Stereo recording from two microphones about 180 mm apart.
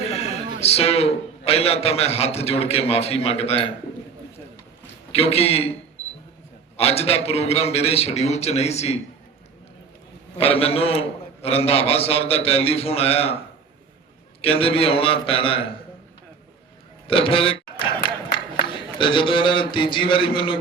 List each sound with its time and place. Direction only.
0.1 s a man's voice: 35° left (ahead or behind)
5.1 s a man's voice: 35° left (ahead or behind)
6.7 s a man's voice: 35° left (ahead or behind)
10.3 s a man's voice: 35° left (ahead or behind)
14.4 s a man's voice: 30° left (ahead or behind)
17.1 s a man's voice: 30° left (ahead or behind)
18.6 s a man's voice: 25° left (ahead or behind)